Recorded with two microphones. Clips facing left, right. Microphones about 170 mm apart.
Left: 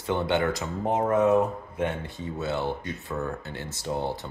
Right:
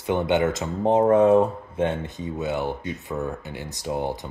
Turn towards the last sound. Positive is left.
turn(degrees=-15)  # may be behind; listen again after turning